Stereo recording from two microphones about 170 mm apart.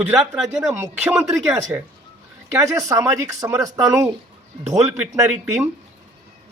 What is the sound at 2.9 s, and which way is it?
Speech, 20° right (ahead or behind).